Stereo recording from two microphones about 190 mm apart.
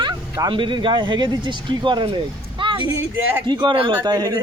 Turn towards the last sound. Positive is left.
turn(degrees=-20)  # may be behind; listen again after turning